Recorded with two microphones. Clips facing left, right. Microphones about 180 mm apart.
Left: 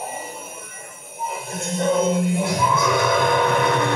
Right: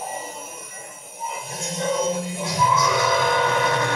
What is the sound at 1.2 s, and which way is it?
Music, 60° left (ahead or behind).